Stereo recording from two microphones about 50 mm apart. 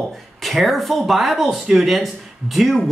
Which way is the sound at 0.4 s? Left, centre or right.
Centre.